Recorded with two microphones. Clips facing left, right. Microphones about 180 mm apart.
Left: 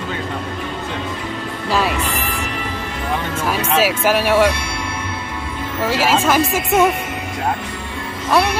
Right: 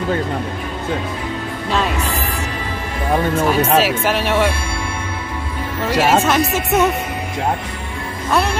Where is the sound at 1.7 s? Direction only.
5° left (ahead or behind).